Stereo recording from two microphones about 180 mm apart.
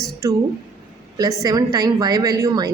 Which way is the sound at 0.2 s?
20° right (ahead or behind).